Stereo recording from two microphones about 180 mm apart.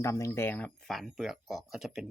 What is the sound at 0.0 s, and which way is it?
Speech, 15° left (ahead or behind).